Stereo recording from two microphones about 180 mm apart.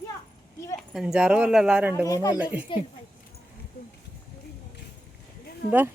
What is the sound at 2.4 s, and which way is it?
Speech, 10° right (ahead or behind).